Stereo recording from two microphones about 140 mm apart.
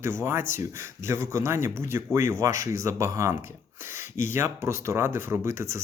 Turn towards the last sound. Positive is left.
turn(degrees=-20)  # may be behind; listen again after turning